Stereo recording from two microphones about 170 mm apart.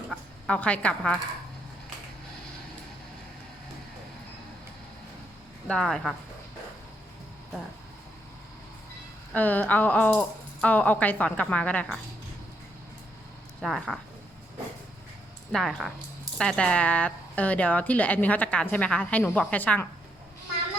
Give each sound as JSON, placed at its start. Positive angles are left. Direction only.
{"t": 0.1, "sound": "speech", "side_deg": 5}
{"t": 5.6, "sound": "speech", "side_deg": 5}
{"t": 9.3, "sound": "a woman's voice", "side_deg": 10}
{"t": 13.6, "sound": "speech", "side_deg": 0}
{"t": 15.5, "sound": "a woman's voice", "side_deg": 0}